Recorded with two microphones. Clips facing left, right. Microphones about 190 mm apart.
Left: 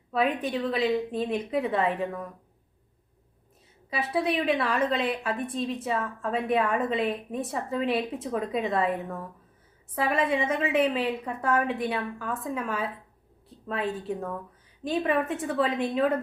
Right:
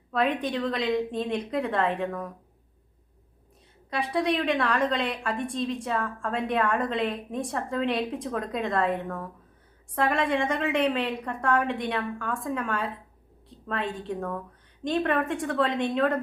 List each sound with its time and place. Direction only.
0.1 s a woman's voice: 5° left (ahead or behind)
3.8 s a woman's voice: 5° left (ahead or behind)